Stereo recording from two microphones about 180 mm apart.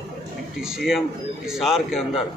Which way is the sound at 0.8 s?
Centre (ahead or behind).